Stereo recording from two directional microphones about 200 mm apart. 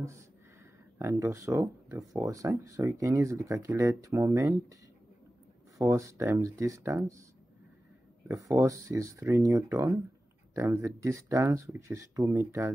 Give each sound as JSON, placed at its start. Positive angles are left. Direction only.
{"t": 0.9, "sound": "speech", "side_deg": -15}
{"t": 5.8, "sound": "speech", "side_deg": -15}
{"t": 8.3, "sound": "speech", "side_deg": -15}